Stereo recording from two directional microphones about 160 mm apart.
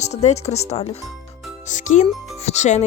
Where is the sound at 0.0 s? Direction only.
45° left (ahead or behind).